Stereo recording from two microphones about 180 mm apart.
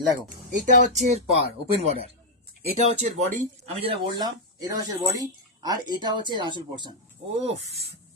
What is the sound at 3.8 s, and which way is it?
Speech, 30° right (ahead or behind).